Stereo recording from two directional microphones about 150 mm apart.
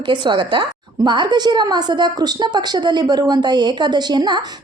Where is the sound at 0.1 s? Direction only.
35° right (ahead or behind).